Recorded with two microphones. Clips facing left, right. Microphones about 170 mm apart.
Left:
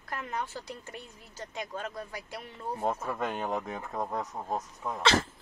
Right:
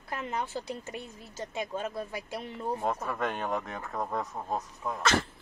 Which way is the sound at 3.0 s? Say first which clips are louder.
Even; 15° left (ahead or behind).